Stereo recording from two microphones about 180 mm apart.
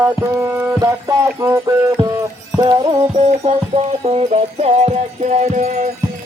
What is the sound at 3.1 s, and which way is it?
Music, 40° right (ahead or behind).